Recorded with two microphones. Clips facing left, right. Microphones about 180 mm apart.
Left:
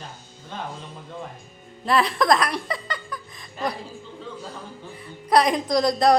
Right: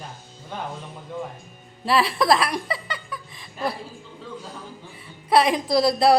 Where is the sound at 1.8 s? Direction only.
5° right (ahead or behind).